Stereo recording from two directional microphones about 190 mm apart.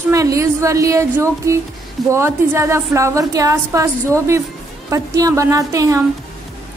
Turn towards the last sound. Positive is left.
turn(degrees=-15)  # may be behind; listen again after turning